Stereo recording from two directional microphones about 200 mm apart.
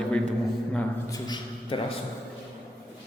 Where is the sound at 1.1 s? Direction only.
20° left (ahead or behind).